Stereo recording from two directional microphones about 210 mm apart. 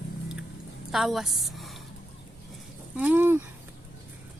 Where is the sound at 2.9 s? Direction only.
10° right (ahead or behind).